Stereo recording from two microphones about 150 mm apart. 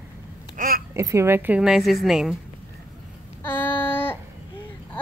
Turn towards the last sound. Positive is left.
turn(degrees=15)  # may be behind; listen again after turning